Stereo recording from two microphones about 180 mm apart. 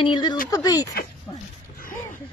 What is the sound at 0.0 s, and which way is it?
Speech, 25° left (ahead or behind).